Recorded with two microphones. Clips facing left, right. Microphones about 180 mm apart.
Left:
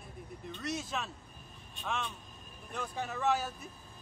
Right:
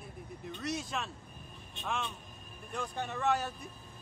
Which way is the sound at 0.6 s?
Centre (ahead or behind).